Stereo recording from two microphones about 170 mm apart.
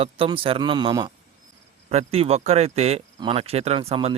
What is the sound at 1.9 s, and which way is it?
Speech, 35° right (ahead or behind).